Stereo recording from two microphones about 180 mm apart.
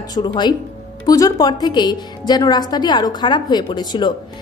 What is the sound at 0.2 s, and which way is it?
A woman's voice, 30° left (ahead or behind).